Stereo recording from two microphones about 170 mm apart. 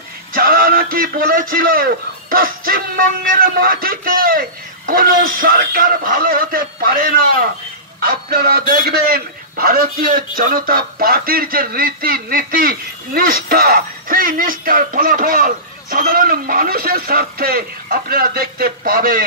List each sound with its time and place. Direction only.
0.3 s a man's voice: 60° right (ahead or behind)